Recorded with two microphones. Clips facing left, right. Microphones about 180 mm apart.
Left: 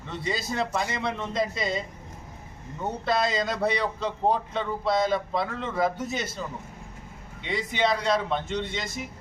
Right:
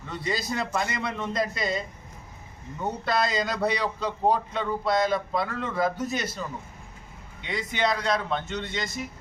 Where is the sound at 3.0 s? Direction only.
Centre (ahead or behind).